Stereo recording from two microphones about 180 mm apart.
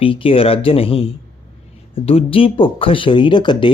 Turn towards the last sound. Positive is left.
turn(degrees=25)  # may be behind; listen again after turning